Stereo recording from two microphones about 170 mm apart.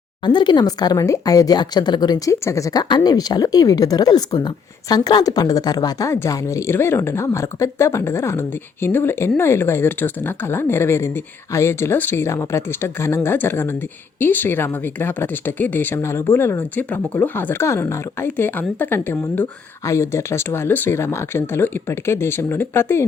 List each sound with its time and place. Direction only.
0.2 s speech: 25° left (ahead or behind)